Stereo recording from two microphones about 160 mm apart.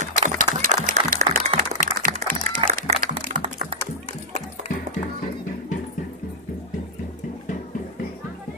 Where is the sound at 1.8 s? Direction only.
60° right (ahead or behind).